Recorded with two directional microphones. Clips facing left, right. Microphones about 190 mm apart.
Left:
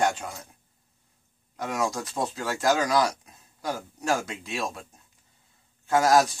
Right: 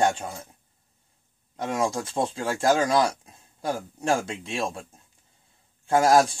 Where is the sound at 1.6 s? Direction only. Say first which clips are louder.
Right 2 dB; 30° right (ahead or behind).